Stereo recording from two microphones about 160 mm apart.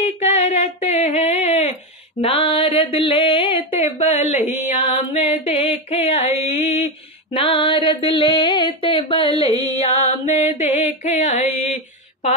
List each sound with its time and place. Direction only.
0.0 s female singing: 40° left (ahead or behind)
2.2 s a sound: 35° left (ahead or behind)
9.8 s music: 45° left (ahead or behind)